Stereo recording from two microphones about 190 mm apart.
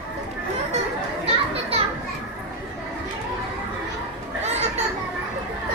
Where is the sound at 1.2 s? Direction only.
30° right (ahead or behind).